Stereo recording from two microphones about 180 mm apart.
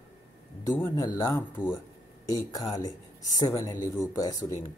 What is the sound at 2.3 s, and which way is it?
A woman's voice, 20° left (ahead or behind).